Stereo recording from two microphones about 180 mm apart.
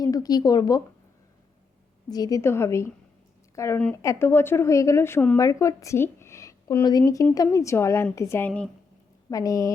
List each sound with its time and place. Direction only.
0.0 s speech: 20° left (ahead or behind)
2.0 s speech: 20° left (ahead or behind)
9.3 s a woman's voice: 20° left (ahead or behind)